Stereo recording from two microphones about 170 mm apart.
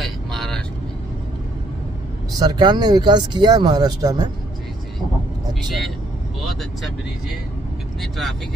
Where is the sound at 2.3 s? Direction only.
25° right (ahead or behind).